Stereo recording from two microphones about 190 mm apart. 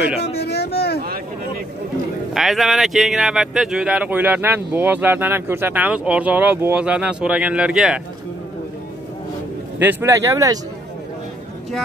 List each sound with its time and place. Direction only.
0.4 s a sound: 60° left (ahead or behind)
2.3 s speech: centre (ahead or behind)
9.8 s speech: 10° right (ahead or behind)